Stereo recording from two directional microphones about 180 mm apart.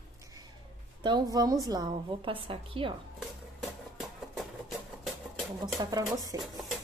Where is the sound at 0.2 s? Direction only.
20° right (ahead or behind).